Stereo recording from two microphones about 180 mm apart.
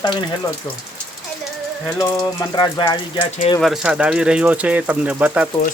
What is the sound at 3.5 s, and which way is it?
Speech, centre (ahead or behind).